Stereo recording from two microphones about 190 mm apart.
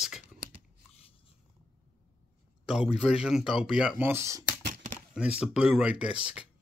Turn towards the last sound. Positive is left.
turn(degrees=-5)  # may be behind; listen again after turning